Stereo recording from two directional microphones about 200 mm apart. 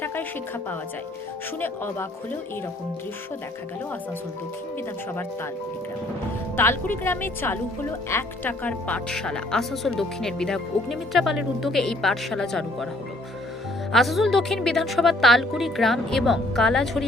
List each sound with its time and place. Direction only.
1.6 s a woman's voice: 10° left (ahead or behind)
6.6 s a woman's voice: 10° left (ahead or behind)
13.9 s a woman's voice: centre (ahead or behind)